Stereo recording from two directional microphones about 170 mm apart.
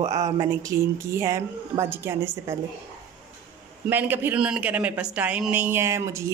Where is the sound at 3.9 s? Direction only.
10° right (ahead or behind).